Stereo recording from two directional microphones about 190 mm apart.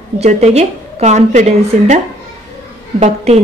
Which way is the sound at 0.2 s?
35° right (ahead or behind).